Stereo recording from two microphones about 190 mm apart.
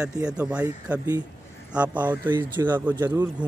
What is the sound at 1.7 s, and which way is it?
Speech, 5° right (ahead or behind).